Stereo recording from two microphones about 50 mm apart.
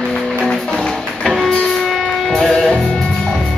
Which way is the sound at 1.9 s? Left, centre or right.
Centre.